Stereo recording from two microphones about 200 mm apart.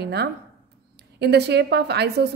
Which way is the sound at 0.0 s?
55° right (ahead or behind).